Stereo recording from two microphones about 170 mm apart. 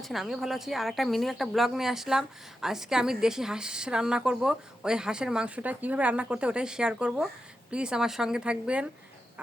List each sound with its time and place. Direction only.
0.0 s speech: centre (ahead or behind)